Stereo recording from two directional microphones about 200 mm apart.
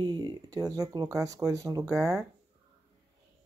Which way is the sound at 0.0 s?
20° right (ahead or behind).